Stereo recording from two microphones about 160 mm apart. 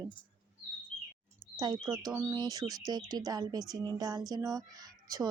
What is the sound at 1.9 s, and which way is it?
Speech, 10° right (ahead or behind).